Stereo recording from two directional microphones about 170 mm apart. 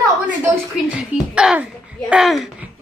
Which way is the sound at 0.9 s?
5° right (ahead or behind).